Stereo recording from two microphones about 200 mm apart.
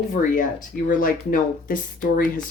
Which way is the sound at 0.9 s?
45° left (ahead or behind).